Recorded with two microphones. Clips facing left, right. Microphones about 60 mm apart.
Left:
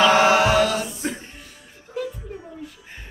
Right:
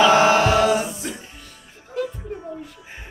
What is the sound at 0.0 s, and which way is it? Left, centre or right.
Mantra, centre.